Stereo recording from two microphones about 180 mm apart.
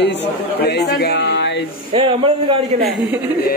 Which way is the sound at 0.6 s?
65° left (ahead or behind).